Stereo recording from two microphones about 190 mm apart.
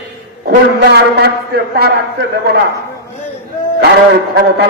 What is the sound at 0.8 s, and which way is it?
A man's voice, 60° right (ahead or behind).